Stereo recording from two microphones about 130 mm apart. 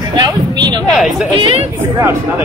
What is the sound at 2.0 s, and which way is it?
Speech, 20° right (ahead or behind).